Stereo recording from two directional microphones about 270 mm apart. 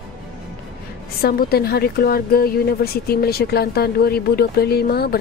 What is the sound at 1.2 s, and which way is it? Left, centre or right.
Speech, left.